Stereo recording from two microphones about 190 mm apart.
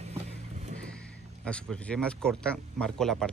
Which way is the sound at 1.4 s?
5° left (ahead or behind).